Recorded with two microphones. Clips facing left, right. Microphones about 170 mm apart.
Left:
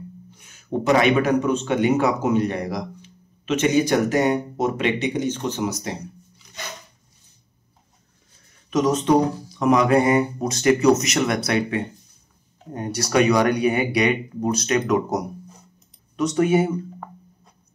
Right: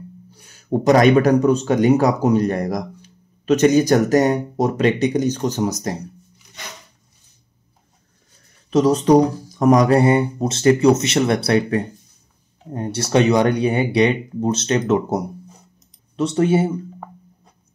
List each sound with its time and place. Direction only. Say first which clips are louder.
0.3 s a sound: right 2 dB; 35° right (ahead or behind)
0.7 s speech: right 5 dB; 40° right (ahead or behind)
8.6 s speech: right 4 dB; 35° right (ahead or behind)